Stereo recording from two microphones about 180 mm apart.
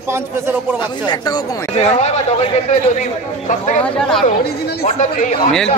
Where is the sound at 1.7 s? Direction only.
35° left (ahead or behind).